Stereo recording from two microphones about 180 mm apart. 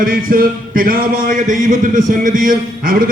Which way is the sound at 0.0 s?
50° right (ahead or behind).